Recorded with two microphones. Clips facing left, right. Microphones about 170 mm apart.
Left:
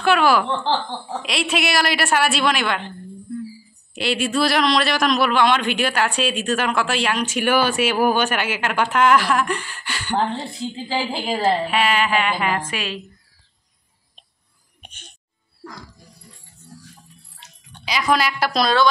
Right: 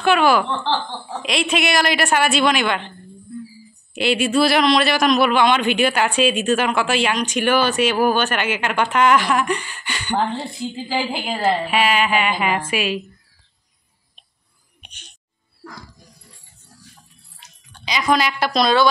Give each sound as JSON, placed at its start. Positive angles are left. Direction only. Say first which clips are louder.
{"t": 0.0, "sound": "a man's voice", "louder": "right 1 dB", "side_deg": 0}
{"t": 3.9, "sound": "a man's voice", "louder": "right 4 dB", "side_deg": 0}
{"t": 14.8, "sound": "a sound", "louder": "left 3 dB", "side_deg": 50}
{"t": 17.8, "sound": "a man's voice", "louder": "right 1 dB", "side_deg": 5}